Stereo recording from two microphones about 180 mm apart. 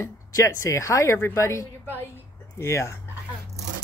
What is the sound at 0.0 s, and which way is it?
Speech, 15° left (ahead or behind).